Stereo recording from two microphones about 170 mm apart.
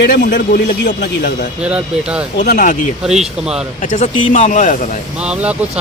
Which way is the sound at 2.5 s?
50° left (ahead or behind).